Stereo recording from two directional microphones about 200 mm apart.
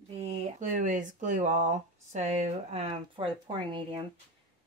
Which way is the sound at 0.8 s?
40° right (ahead or behind).